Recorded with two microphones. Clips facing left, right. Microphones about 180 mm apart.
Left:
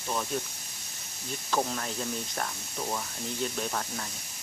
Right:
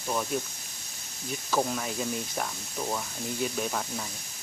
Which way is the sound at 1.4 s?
5° right (ahead or behind).